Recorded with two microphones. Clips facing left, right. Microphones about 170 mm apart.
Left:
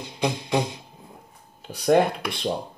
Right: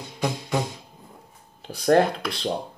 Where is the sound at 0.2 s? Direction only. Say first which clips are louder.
Left 2 dB; 20° left (ahead or behind).